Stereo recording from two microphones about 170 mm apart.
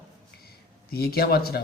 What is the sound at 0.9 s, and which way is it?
Speech, 65° left (ahead or behind).